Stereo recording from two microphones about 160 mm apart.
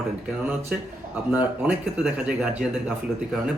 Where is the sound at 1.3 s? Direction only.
10° right (ahead or behind).